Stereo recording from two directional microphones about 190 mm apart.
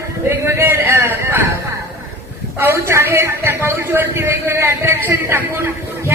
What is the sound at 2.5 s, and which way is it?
A man's voice, 10° right (ahead or behind).